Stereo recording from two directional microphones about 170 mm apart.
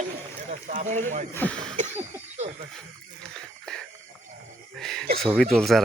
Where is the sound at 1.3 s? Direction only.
10° left (ahead or behind).